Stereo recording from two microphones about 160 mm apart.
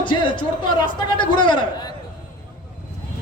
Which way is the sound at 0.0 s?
30° left (ahead or behind).